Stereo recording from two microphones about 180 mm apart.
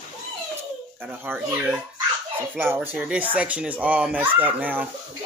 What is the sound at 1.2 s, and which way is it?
Speech, 10° right (ahead or behind).